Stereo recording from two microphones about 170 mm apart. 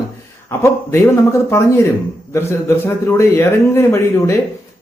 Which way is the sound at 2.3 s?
15° left (ahead or behind).